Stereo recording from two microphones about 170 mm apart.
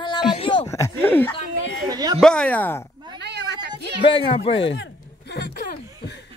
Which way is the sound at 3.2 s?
85° right.